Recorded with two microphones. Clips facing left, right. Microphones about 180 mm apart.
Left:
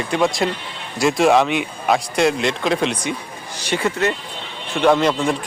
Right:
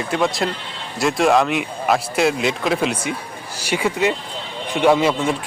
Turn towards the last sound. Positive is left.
turn(degrees=-5)  # may be behind; listen again after turning